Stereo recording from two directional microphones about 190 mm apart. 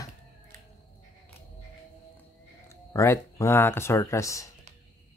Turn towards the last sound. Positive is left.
turn(degrees=15)  # may be behind; listen again after turning